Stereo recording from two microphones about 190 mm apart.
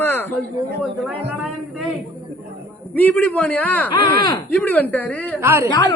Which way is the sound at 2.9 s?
10° left (ahead or behind).